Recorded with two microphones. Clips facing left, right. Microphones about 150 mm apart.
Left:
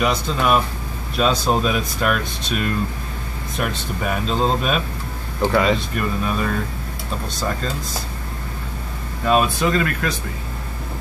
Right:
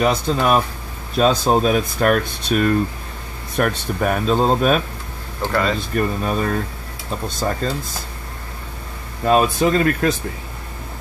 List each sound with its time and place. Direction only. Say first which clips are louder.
0.0 s speech: right 2 dB; 40° right (ahead or behind)
5.4 s speech: left 3 dB; 5° left (ahead or behind)
5.9 s speech: right 2 dB; 40° right (ahead or behind)
9.2 s speech: right 2 dB; 35° right (ahead or behind)